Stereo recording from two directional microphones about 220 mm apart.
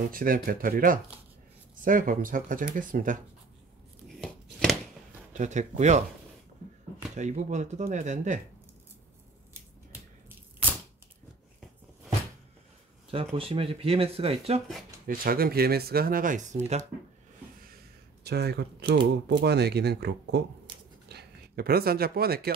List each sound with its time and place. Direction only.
0.1 s speech: 40° right (ahead or behind)
4.2 s a sound: 5° left (ahead or behind)
5.3 s speech: 35° right (ahead or behind)
7.2 s speech: 30° right (ahead or behind)
13.1 s speech: 25° right (ahead or behind)
15.0 s speech: 40° right (ahead or behind)
18.2 s speech: 50° right (ahead or behind)
20.7 s a sound: 20° right (ahead or behind)
21.1 s speech: 45° right (ahead or behind)